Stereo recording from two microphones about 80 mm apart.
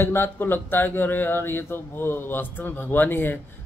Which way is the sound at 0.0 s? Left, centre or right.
Left.